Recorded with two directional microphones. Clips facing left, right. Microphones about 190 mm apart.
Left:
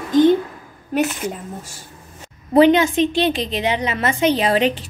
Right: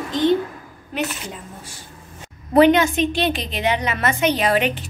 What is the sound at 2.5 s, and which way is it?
A woman's voice, 25° left (ahead or behind).